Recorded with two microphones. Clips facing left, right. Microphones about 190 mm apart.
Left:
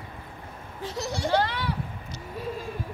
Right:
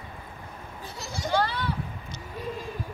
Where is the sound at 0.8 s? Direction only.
90° left.